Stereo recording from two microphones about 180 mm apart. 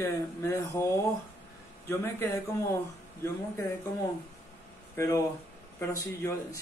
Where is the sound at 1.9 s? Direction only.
15° left (ahead or behind).